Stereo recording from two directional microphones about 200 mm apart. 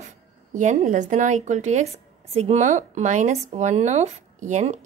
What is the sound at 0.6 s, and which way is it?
Speech, 35° right (ahead or behind).